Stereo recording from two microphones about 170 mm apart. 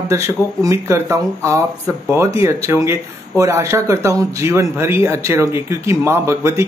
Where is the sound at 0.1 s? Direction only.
20° right (ahead or behind).